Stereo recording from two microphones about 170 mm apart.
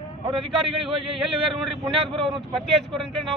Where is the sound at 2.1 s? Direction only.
30° right (ahead or behind).